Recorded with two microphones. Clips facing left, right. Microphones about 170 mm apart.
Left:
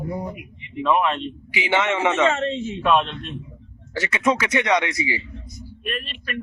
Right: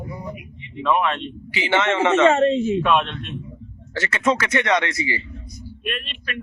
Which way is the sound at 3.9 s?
15° left (ahead or behind).